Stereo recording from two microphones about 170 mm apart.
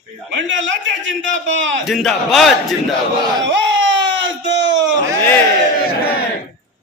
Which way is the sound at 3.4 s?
90° right.